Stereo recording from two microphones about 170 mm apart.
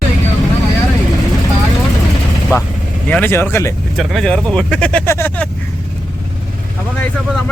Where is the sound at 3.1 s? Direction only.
10° left (ahead or behind).